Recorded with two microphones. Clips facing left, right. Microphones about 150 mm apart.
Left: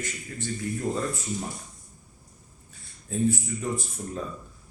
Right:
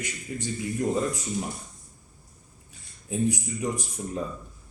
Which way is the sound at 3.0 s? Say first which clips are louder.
Left 1 dB; 15° right (ahead or behind).